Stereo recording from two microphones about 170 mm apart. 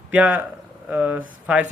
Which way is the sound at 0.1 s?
10° right (ahead or behind).